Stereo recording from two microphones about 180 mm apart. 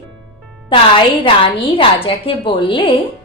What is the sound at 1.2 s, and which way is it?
Speech, 30° left (ahead or behind).